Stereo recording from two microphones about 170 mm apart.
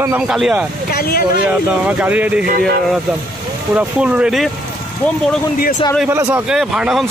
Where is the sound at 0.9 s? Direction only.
65° left (ahead or behind).